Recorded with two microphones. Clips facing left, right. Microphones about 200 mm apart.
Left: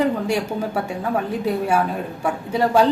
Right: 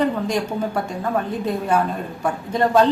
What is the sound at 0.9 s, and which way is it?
A woman's voice, 10° left (ahead or behind).